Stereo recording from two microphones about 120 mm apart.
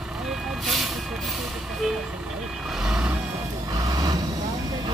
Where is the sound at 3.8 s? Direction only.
30° right (ahead or behind).